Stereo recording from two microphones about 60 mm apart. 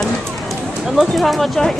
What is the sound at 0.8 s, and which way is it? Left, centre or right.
Speech, centre.